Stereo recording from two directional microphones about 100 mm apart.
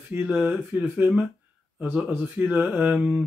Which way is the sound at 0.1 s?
15° right (ahead or behind).